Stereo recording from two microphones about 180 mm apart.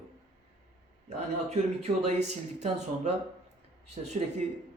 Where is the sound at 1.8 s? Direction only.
40° right (ahead or behind).